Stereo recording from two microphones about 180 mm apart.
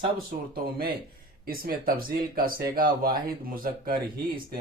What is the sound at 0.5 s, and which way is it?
Speech, 55° right (ahead or behind).